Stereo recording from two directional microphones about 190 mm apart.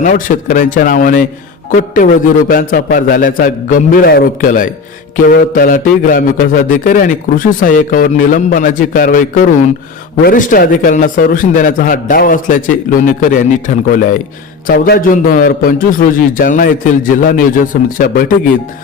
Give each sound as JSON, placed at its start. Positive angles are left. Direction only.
{"t": 0.0, "sound": "a man's voice", "side_deg": 45}
{"t": 2.5, "sound": "a man's voice", "side_deg": 45}